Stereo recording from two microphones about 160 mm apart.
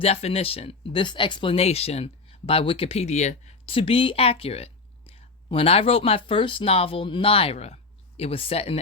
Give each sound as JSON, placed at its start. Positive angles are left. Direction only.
{"t": 0.0, "sound": "speech", "side_deg": 40}